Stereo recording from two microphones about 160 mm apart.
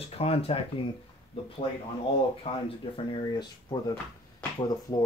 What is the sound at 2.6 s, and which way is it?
Speech, 35° left (ahead or behind).